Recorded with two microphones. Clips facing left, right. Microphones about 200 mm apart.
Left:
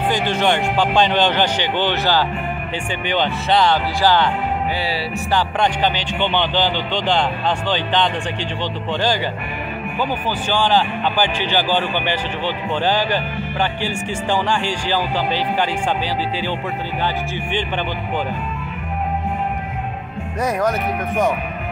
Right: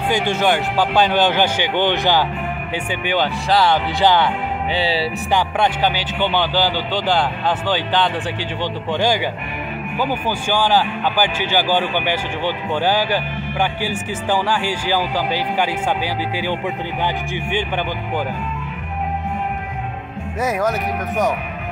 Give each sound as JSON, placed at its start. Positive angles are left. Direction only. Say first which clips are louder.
{"t": 0.1, "sound": "a man's voice", "louder": "right 2 dB", "side_deg": -10}
{"t": 3.1, "sound": "speech", "louder": "even", "side_deg": -5}
{"t": 3.7, "sound": "a man's voice", "louder": "right 1 dB", "side_deg": -15}
{"t": 4.7, "sound": "music", "louder": "right 4 dB", "side_deg": -25}
{"t": 5.3, "sound": "a man's voice", "louder": "even", "side_deg": -10}
{"t": 17.0, "sound": "a man's voice", "louder": "right 1 dB", "side_deg": -10}